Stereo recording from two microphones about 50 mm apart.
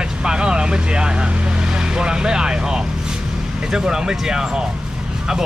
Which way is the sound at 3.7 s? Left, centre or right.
Centre.